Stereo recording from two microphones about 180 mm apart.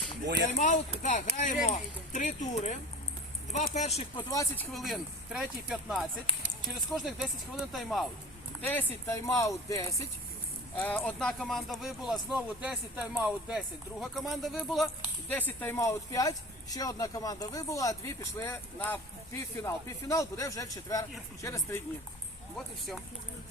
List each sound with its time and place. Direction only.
0.5 s speech: 40° left (ahead or behind)
4.3 s speech: 20° left (ahead or behind)
4.7 s speech: centre (ahead or behind)
8.7 s speech: 15° left (ahead or behind)
22.5 s speech: centre (ahead or behind)